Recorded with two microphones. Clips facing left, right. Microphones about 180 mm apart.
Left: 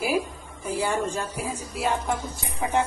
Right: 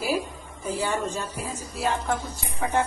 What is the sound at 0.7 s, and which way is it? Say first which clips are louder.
A woman's voice: left 1 dB; 10° left (ahead or behind).